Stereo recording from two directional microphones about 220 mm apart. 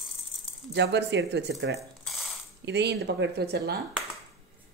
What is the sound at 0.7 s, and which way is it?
Speech, 50° right (ahead or behind).